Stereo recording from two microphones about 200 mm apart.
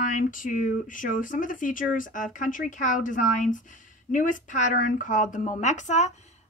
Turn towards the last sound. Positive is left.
turn(degrees=35)  # may be behind; listen again after turning